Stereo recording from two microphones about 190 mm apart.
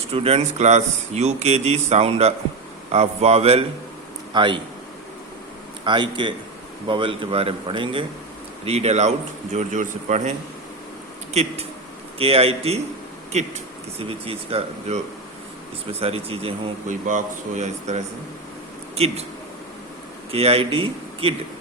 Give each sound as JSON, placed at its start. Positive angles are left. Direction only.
{"t": 0.1, "sound": "a man's voice", "side_deg": -30}
{"t": 5.8, "sound": "speech", "side_deg": -25}
{"t": 12.2, "sound": "speech", "side_deg": -30}
{"t": 14.0, "sound": "speech", "side_deg": -30}
{"t": 16.9, "sound": "speech", "side_deg": -40}
{"t": 20.3, "sound": "speech", "side_deg": -30}